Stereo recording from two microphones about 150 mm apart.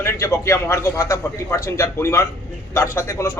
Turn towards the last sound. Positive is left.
turn(degrees=20)  # may be behind; listen again after turning